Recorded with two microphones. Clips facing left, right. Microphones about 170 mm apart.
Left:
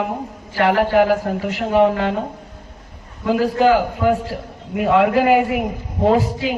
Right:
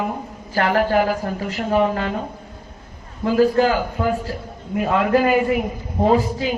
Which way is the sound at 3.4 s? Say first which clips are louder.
Left 1 dB; 70° left (ahead or behind).